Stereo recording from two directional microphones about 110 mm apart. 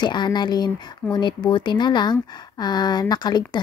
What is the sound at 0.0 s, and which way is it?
Speech, 40° left (ahead or behind).